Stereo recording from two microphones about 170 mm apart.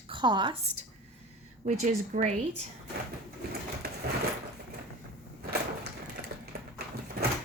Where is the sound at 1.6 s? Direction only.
45° right (ahead or behind).